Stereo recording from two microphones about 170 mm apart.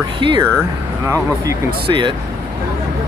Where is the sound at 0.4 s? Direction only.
15° right (ahead or behind).